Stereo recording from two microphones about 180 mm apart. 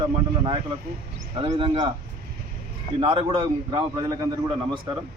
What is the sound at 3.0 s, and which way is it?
Speech, 30° right (ahead or behind).